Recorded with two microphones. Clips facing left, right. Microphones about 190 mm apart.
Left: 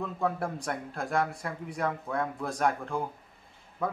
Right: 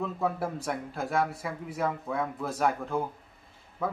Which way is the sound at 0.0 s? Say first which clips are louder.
Right 1 dB; 5° right (ahead or behind).